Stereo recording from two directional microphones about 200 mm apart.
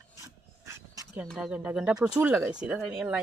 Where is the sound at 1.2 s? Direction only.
5° right (ahead or behind).